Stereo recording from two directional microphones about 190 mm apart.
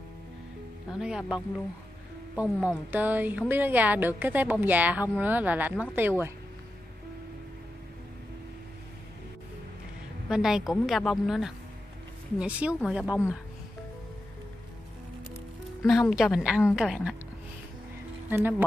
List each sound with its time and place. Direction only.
0.9 s a woman's voice: 5° right (ahead or behind)
10.3 s a woman's voice: 5° right (ahead or behind)
15.8 s a woman's voice: centre (ahead or behind)
18.3 s a woman's voice: 10° right (ahead or behind)